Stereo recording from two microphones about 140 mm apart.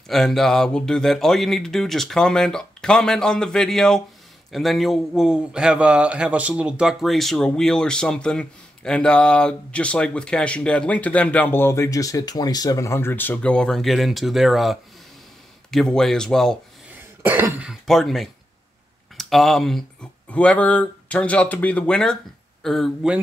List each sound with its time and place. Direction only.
0.1 s a man's voice: centre (ahead or behind)
17.2 s cough: 15° right (ahead or behind)
17.8 s a man's voice: centre (ahead or behind)